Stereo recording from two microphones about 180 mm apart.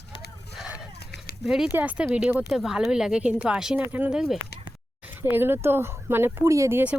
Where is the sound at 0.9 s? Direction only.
70° left (ahead or behind).